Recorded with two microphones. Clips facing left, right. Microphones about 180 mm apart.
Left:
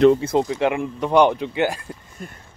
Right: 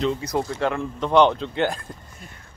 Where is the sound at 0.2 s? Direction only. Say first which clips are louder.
Left 4 dB; 20° left (ahead or behind).